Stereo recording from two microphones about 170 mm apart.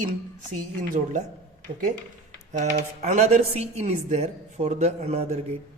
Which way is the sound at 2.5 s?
45° right (ahead or behind).